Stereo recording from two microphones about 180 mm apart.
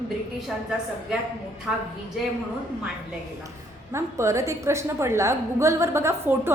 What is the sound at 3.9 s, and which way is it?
A woman's voice, 15° right (ahead or behind).